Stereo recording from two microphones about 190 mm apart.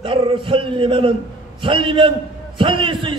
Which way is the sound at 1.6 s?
25° right (ahead or behind).